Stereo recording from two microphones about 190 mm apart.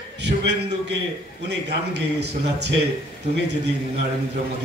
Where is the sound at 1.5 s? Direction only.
60° right (ahead or behind).